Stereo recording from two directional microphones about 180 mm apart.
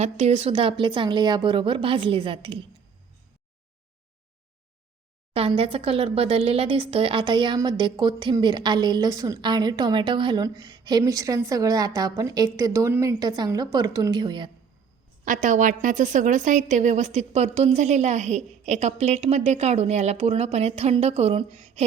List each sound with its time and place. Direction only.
0.0 s speech: 35° right (ahead or behind)
5.3 s speech: 30° right (ahead or behind)
15.2 s a woman's voice: 45° right (ahead or behind)